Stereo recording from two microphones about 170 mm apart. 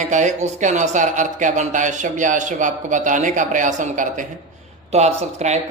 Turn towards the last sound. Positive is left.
turn(degrees=-40)  # may be behind; listen again after turning